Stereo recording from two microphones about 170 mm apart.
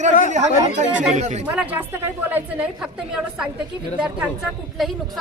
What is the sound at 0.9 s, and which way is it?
Speech, 5° right (ahead or behind).